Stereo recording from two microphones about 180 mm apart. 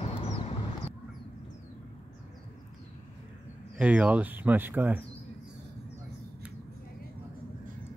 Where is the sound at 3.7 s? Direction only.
5° right (ahead or behind).